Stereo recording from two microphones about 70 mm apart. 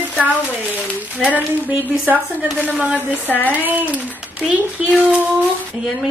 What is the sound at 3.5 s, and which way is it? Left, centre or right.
Speech, right.